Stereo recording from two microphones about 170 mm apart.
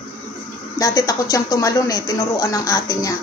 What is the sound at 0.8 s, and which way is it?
Speech, 20° left (ahead or behind).